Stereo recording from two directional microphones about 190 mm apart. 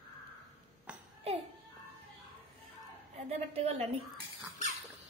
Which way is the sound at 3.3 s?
35° right (ahead or behind).